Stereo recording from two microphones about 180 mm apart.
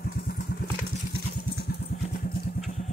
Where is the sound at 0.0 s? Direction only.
60° left (ahead or behind).